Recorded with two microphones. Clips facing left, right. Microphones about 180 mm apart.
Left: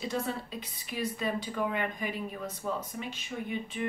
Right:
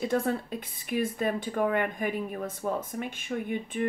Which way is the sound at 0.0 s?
50° right (ahead or behind).